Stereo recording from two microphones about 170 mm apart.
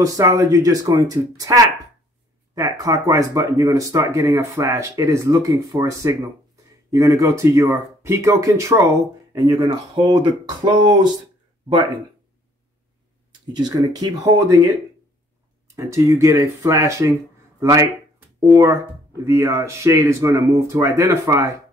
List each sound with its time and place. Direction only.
0.0 s speech: 20° right (ahead or behind)
13.5 s speech: 25° right (ahead or behind)